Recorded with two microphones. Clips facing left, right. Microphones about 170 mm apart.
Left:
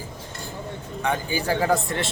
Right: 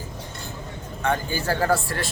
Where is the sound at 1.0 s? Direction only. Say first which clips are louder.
Even; 15° left (ahead or behind).